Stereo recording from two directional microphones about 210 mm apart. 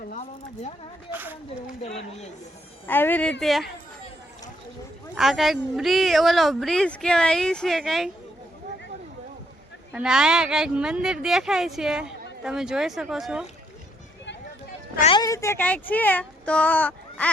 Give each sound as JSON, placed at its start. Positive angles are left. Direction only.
{"t": 0.1, "sound": "speech", "side_deg": 30}
{"t": 1.1, "sound": "speech", "side_deg": -10}
{"t": 1.8, "sound": "speech", "side_deg": 30}
{"t": 2.8, "sound": "a child's voice", "side_deg": 10}
{"t": 5.1, "sound": "speech", "side_deg": 0}
{"t": 9.9, "sound": "speech", "side_deg": -5}
{"t": 15.0, "sound": "a child's voice", "side_deg": 20}